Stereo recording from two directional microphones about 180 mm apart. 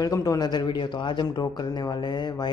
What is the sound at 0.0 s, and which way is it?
Speech, 20° left (ahead or behind).